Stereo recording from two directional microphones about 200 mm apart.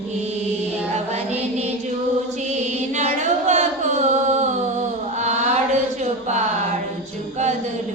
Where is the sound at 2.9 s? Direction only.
35° right (ahead or behind).